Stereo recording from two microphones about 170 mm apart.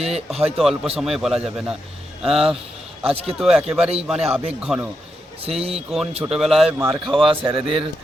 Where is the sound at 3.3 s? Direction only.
5° right (ahead or behind).